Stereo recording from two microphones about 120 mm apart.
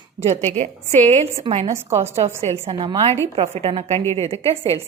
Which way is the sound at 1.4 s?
55° right (ahead or behind).